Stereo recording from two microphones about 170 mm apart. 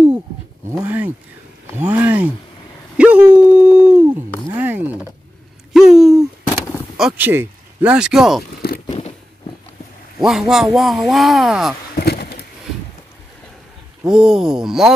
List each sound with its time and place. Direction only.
0.7 s speech: 10° right (ahead or behind)
3.0 s dog: 10° right (ahead or behind)
4.6 s a sound: 10° right (ahead or behind)
7.0 s speech: 5° right (ahead or behind)
10.2 s speech: centre (ahead or behind)
12.0 s a sound: 65° left (ahead or behind)
14.0 s speech: 5° right (ahead or behind)